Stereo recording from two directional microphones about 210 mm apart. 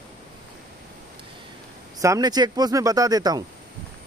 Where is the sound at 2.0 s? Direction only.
15° right (ahead or behind).